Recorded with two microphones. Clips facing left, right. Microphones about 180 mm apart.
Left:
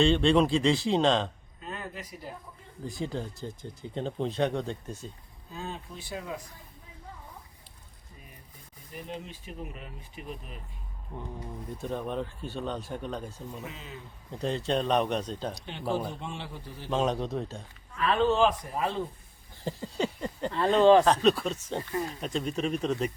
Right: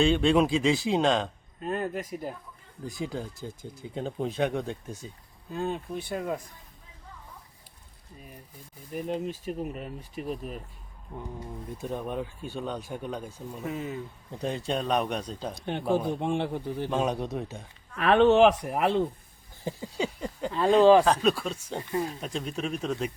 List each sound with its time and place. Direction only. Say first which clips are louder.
0.0 s speech: even; 5° right (ahead or behind)
1.6 s speech: right 9 dB; 50° right (ahead or behind)
2.8 s speech: even; 5° right (ahead or behind)
5.5 s a man's voice: right 8 dB; 55° right (ahead or behind)
8.9 s speech: right 9 dB; 50° right (ahead or behind)
11.8 s speech: even; 10° right (ahead or behind)
13.7 s speech: right 10 dB; 50° right (ahead or behind)
14.3 s speech: left 2 dB; 15° right (ahead or behind)
15.5 s a man's voice: right 7 dB; 55° right (ahead or behind)
16.9 s speech: left 2 dB; 5° right (ahead or behind)
17.9 s speech: right 6 dB; 70° right (ahead or behind)
19.6 s speech: even; 5° right (ahead or behind)
22.2 s speech: left 2 dB; centre (ahead or behind)